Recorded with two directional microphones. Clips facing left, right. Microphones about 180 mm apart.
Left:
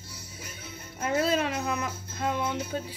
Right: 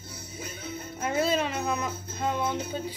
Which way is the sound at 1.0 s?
10° right (ahead or behind).